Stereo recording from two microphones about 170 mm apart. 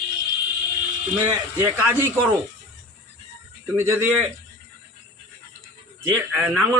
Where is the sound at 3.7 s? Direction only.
15° right (ahead or behind).